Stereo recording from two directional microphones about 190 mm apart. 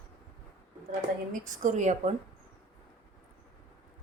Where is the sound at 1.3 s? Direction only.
40° right (ahead or behind).